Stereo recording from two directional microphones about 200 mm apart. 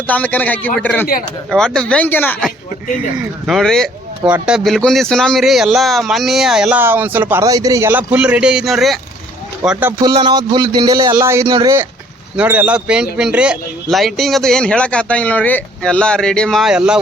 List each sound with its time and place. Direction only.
0.1 s a man's voice: 10° left (ahead or behind)
10.0 s a man's voice: 20° right (ahead or behind); by 17.0 s 5° right (ahead or behind)